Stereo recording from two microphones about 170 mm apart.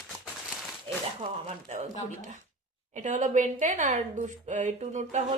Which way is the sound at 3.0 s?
45° right (ahead or behind).